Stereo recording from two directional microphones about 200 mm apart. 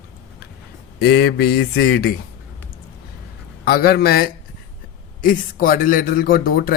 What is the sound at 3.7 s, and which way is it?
A man's voice, 50° left (ahead or behind).